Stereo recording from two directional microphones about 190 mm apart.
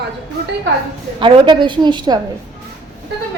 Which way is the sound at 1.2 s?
25° right (ahead or behind).